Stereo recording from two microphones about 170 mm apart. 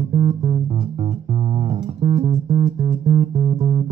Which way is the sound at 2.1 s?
35° right (ahead or behind).